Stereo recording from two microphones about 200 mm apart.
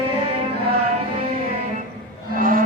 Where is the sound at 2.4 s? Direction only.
45° right (ahead or behind).